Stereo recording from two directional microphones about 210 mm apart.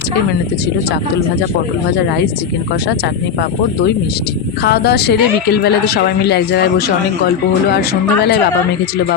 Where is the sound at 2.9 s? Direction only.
50° left (ahead or behind).